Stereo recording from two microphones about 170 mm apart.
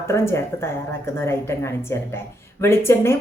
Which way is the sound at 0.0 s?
15° left (ahead or behind).